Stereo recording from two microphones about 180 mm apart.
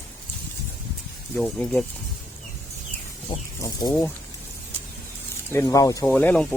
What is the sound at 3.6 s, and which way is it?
Speech, 20° left (ahead or behind).